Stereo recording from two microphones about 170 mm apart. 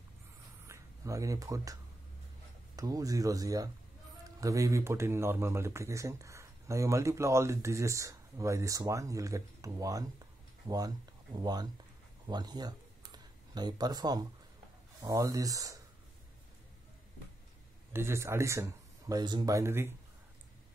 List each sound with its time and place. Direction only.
0.7 s speech: 15° right (ahead or behind)
11.3 s speech: 25° right (ahead or behind)
12.3 s a sound: 25° right (ahead or behind)
15.0 s speech: 20° right (ahead or behind)
17.9 s speech: 15° right (ahead or behind)